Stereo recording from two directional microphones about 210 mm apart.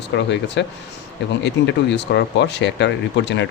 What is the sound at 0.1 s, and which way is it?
Speech, 60° left (ahead or behind).